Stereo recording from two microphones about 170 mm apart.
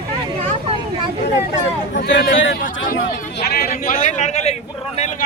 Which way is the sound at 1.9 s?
80° left.